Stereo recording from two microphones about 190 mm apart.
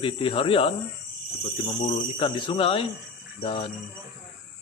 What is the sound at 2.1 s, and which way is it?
Speech, 25° left (ahead or behind).